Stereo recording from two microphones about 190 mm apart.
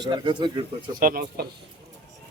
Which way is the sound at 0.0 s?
25° right (ahead or behind).